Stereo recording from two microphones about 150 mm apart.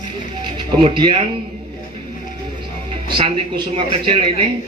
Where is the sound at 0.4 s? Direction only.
35° right (ahead or behind).